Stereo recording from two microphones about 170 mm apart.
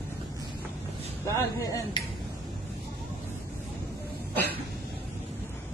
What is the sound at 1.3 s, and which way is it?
Speech, 15° left (ahead or behind).